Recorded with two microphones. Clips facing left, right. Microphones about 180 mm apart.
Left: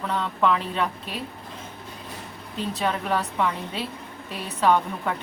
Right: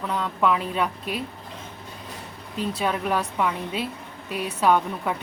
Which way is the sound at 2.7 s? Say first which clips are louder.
Even; 5° right (ahead or behind).